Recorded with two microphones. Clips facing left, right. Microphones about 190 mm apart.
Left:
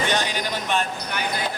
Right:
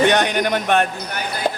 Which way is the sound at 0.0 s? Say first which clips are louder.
Right 8 dB; 60° right (ahead or behind).